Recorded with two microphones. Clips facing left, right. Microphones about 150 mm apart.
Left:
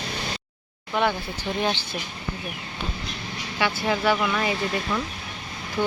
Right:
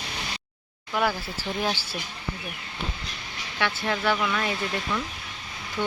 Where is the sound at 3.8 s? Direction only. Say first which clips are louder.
Left 3 dB; 5° left (ahead or behind).